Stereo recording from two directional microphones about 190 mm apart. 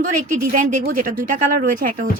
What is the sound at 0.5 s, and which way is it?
A woman's voice, 45° right (ahead or behind).